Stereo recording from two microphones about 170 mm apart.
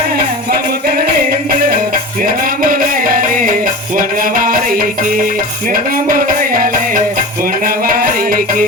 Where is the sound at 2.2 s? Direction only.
55° right (ahead or behind).